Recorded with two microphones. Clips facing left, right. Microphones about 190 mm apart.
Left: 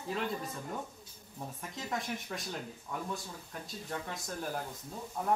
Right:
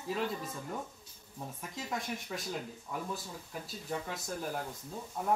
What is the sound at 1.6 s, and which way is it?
Speech, centre (ahead or behind).